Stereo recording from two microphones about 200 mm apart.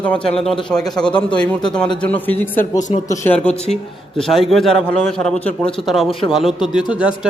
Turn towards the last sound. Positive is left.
turn(degrees=-5)  # may be behind; listen again after turning